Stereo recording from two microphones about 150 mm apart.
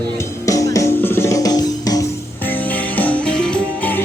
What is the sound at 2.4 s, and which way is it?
Music, 10° left (ahead or behind).